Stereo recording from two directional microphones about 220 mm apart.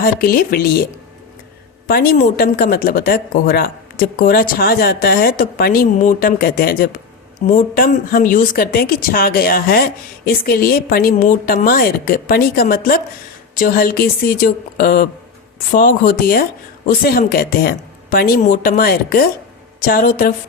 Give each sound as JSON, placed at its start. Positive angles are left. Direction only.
{"t": 0.0, "sound": "speech", "side_deg": 40}
{"t": 1.9, "sound": "a woman's voice", "side_deg": 45}